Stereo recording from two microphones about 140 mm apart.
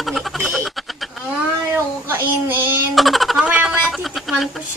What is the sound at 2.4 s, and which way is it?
Speech, 15° right (ahead or behind).